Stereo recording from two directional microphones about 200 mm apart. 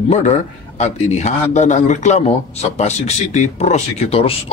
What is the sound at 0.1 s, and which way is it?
A man's voice, 35° left (ahead or behind).